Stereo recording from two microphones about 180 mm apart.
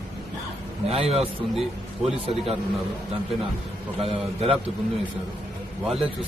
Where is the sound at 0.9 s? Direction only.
35° right (ahead or behind).